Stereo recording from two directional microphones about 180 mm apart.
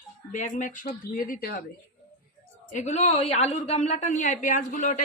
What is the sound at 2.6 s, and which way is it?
A woman's voice, 40° left (ahead or behind).